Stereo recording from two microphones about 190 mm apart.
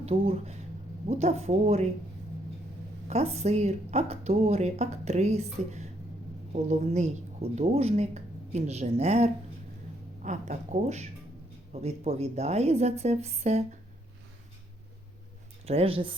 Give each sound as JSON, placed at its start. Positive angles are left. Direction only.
{"t": 0.0, "sound": "a woman's voice", "side_deg": -30}
{"t": 3.1, "sound": "a woman's voice", "side_deg": -35}
{"t": 15.6, "sound": "speech", "side_deg": -30}